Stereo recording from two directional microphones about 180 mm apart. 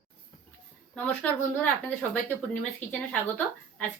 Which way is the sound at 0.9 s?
10° left (ahead or behind).